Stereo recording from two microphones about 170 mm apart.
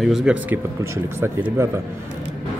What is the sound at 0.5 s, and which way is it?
Speech, 15° right (ahead or behind).